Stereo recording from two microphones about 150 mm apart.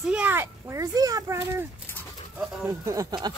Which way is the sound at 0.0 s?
10° right (ahead or behind).